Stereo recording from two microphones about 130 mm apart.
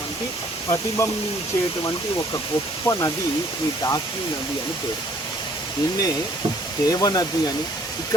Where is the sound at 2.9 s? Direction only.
25° left (ahead or behind).